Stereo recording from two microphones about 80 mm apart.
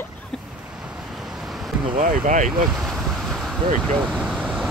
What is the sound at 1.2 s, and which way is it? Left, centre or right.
Vehicle, centre.